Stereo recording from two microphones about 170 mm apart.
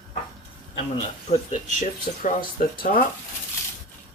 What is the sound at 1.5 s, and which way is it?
Speech, 50° left (ahead or behind).